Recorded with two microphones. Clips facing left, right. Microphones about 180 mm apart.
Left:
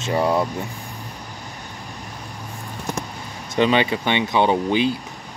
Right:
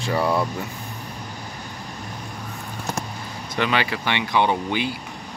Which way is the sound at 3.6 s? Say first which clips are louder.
Left 5 dB; 25° left (ahead or behind).